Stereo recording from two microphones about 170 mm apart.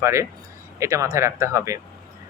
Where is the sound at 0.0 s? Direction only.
15° right (ahead or behind).